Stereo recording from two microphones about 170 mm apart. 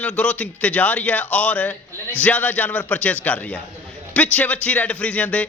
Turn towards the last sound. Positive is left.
turn(degrees=10)  # may be behind; listen again after turning